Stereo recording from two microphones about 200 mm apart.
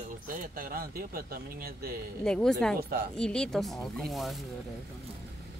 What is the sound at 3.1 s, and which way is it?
Speech, 5° left (ahead or behind).